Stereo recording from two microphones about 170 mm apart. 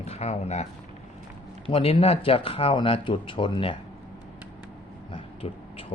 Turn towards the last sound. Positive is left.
turn(degrees=35)  # may be behind; listen again after turning